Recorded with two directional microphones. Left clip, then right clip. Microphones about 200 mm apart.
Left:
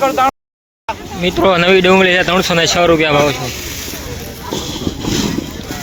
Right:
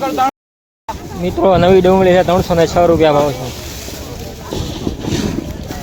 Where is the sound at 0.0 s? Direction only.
30° left (ahead or behind).